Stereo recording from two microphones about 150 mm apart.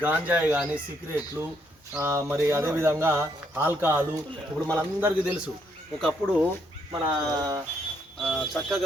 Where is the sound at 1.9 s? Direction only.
15° right (ahead or behind).